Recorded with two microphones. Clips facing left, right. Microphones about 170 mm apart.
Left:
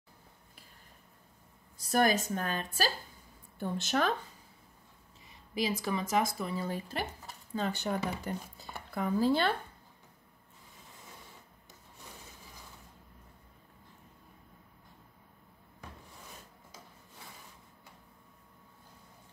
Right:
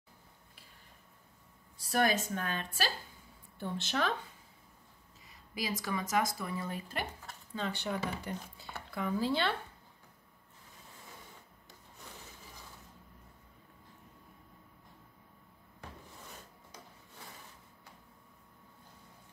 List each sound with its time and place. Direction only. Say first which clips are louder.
1.8 s a woman's voice: left 3 dB; 40° left (ahead or behind)
5.5 s speech: left 4 dB; 25° left (ahead or behind)
7.5 s speech: left 3 dB; 45° left (ahead or behind)